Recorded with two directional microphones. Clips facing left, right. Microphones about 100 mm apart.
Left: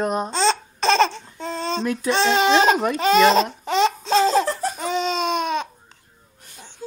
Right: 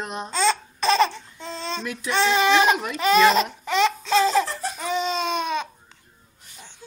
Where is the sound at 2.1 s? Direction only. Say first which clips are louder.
Left 1 dB; 25° left (ahead or behind); by 3.1 s 40° left (ahead or behind).